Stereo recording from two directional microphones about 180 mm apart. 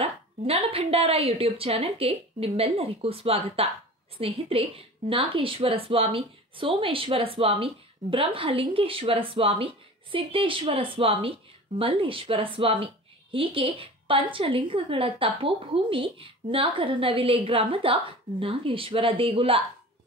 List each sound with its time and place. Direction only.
0.0 s a woman's voice: 35° right (ahead or behind)